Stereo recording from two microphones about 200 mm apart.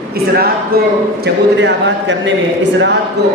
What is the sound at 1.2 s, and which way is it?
A man's voice, 60° right (ahead or behind).